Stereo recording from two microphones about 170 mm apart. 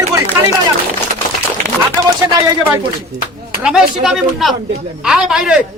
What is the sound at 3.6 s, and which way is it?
Speech, 5° right (ahead or behind).